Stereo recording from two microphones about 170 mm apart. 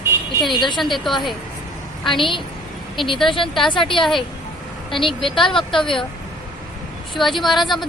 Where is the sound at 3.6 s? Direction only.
30° left (ahead or behind).